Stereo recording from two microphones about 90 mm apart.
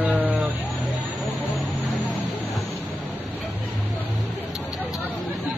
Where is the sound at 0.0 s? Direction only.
20° right (ahead or behind).